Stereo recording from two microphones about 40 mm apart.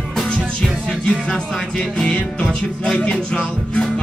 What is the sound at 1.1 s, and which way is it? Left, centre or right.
Music, left.